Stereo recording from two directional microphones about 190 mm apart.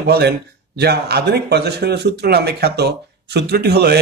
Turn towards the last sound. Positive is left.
turn(degrees=-55)  # may be behind; listen again after turning